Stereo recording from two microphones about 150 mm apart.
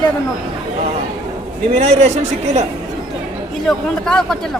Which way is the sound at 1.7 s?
45° right (ahead or behind).